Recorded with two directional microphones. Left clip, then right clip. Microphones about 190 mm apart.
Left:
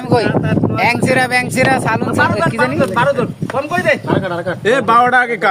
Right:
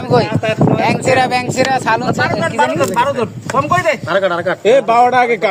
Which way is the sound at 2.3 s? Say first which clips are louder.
Right 1 dB; 10° right (ahead or behind).